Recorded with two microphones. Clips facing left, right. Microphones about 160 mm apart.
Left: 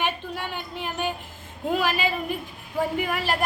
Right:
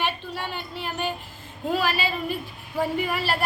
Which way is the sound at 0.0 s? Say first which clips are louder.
Even; 15° left (ahead or behind).